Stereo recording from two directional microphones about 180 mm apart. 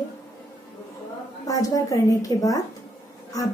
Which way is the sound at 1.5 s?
20° left (ahead or behind).